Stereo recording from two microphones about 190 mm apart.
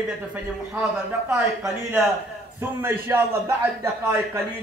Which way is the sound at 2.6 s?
10° right (ahead or behind).